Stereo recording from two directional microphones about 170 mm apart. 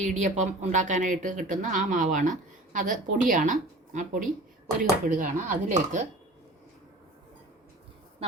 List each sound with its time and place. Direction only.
0.0 s speech: 45° right (ahead or behind)